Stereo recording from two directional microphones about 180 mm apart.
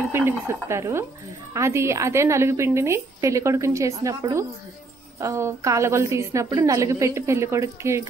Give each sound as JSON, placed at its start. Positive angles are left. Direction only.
{"t": 0.1, "sound": "a woman's voice", "side_deg": -15}